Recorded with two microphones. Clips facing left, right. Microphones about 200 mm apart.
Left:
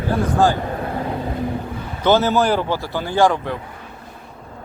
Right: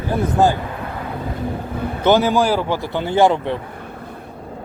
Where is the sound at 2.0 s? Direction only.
15° right (ahead or behind).